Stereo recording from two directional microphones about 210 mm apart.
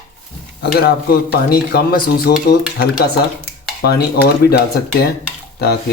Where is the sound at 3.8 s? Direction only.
50° left (ahead or behind).